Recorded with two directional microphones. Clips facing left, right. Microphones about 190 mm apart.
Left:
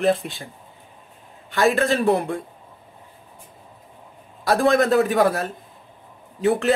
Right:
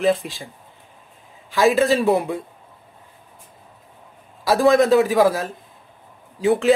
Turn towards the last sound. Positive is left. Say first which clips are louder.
# right 2 dB
turn(degrees=0)  # may be behind; listen again after turning